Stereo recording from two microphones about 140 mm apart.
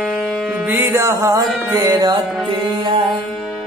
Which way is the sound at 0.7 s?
15° right (ahead or behind).